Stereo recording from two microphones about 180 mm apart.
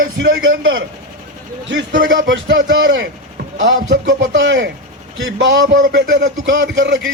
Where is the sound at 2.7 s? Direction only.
85° right.